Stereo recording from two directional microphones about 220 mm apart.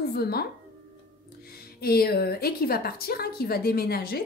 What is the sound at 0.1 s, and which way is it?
Speech, 45° left (ahead or behind).